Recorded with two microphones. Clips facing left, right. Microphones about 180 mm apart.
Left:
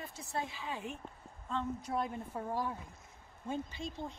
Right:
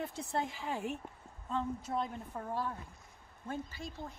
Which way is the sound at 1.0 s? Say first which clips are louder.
Even; 10° right (ahead or behind).